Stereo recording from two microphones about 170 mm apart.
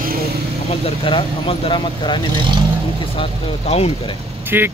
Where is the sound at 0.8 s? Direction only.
30° left (ahead or behind).